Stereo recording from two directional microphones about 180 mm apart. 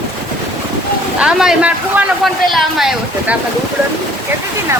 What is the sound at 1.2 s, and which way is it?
Speech, 5° right (ahead or behind).